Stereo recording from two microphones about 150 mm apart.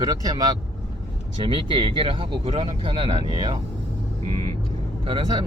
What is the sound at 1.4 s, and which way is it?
Speech, 35° right (ahead or behind).